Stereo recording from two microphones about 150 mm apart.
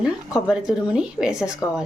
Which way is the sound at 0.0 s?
5° right (ahead or behind).